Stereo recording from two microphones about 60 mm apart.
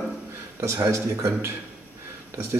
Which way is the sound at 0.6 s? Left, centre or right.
Right.